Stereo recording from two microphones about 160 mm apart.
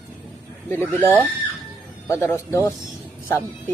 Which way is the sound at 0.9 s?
10° left (ahead or behind).